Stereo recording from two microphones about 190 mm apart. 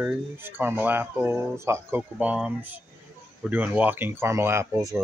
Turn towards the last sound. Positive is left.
turn(degrees=-15)  # may be behind; listen again after turning